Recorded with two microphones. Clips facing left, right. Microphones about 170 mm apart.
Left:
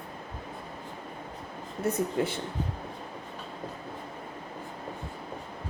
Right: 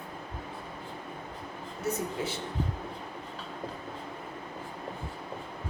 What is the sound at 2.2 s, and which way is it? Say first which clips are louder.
Speech: left 5 dB; 55° left (ahead or behind).